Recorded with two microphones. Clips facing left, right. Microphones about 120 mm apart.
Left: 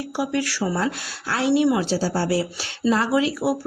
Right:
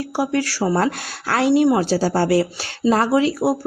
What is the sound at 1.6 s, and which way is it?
Speech, 45° right (ahead or behind).